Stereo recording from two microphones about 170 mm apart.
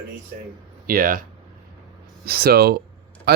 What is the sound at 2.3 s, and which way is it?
Speech, 65° right (ahead or behind).